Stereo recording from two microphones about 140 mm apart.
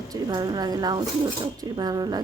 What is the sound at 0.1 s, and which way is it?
A woman's voice, 30° right (ahead or behind).